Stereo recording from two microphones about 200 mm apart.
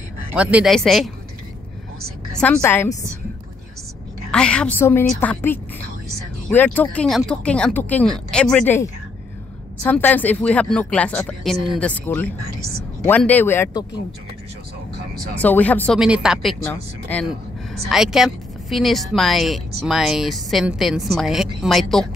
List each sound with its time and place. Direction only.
0.4 s a woman's voice: 5° right (ahead or behind)
2.3 s speech: 10° left (ahead or behind)
4.3 s a woman's voice: 5° left (ahead or behind)
9.8 s speech: 10° left (ahead or behind)
15.3 s speech: 10° left (ahead or behind)
16.0 s a woman's voice: 5° right (ahead or behind)